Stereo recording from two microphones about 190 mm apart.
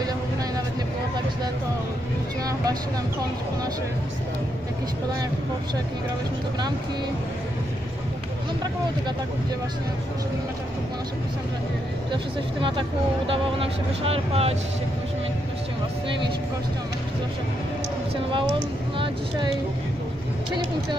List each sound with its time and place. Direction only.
13.3 s speech: 30° right (ahead or behind)